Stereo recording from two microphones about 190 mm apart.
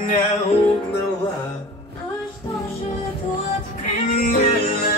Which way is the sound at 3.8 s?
40° left (ahead or behind).